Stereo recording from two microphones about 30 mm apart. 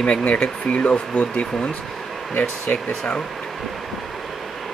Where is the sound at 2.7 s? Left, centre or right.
Left.